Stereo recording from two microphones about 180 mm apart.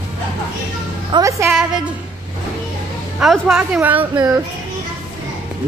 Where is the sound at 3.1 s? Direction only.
Centre (ahead or behind).